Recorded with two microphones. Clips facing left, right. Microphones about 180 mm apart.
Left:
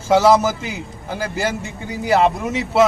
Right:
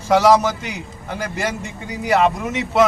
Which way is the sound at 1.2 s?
30° left (ahead or behind).